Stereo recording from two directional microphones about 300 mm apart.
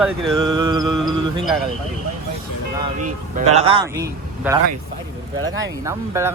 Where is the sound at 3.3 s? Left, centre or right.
Right.